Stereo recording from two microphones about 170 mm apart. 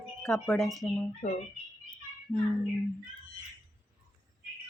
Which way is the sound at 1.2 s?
40° left (ahead or behind).